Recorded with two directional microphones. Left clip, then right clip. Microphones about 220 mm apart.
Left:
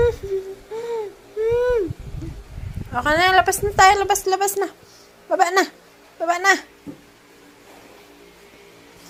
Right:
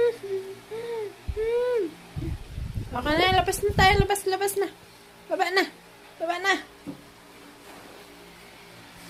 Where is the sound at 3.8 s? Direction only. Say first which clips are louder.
Left 7 dB; 15° left (ahead or behind).